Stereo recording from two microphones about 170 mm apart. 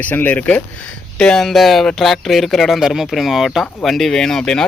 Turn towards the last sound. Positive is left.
turn(degrees=5)  # may be behind; listen again after turning